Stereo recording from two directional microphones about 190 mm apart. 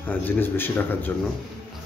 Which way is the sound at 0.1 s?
10° left (ahead or behind).